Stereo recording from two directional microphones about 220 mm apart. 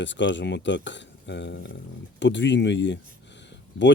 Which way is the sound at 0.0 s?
55° left (ahead or behind).